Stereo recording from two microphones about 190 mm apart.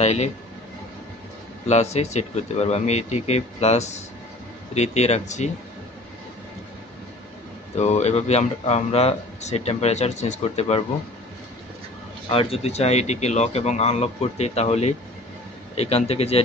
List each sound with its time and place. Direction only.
0.0 s speech: 35° left (ahead or behind)
1.7 s speech: 35° left (ahead or behind)
7.7 s speech: 35° left (ahead or behind)
12.3 s speech: 30° left (ahead or behind)